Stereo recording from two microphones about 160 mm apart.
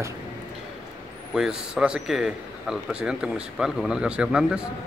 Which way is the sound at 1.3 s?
5° right (ahead or behind).